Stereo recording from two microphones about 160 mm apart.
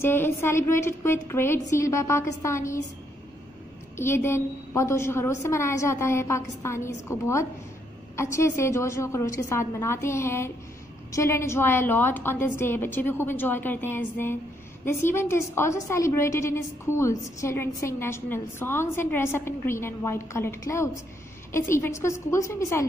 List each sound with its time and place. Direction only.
0.0 s a woman's voice: 15° left (ahead or behind)
3.9 s a woman's voice: 15° left (ahead or behind)